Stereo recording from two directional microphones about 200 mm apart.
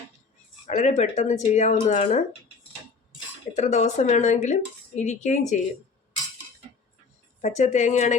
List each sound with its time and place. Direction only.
0.7 s speech: 35° left (ahead or behind)
3.5 s speech: 35° left (ahead or behind)
7.4 s speech: 35° left (ahead or behind)